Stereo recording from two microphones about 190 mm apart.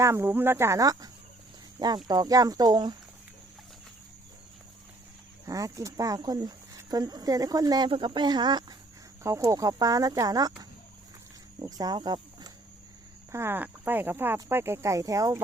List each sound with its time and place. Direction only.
0.0 s speech: 15° right (ahead or behind)
5.5 s speech: 15° right (ahead or behind)
11.6 s speech: 20° right (ahead or behind)